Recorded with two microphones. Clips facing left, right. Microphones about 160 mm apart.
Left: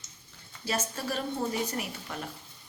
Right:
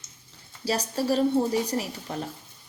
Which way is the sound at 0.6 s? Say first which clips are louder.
Right 6 dB; 35° right (ahead or behind).